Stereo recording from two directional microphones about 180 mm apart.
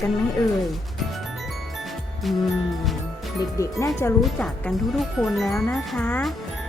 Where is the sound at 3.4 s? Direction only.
15° left (ahead or behind).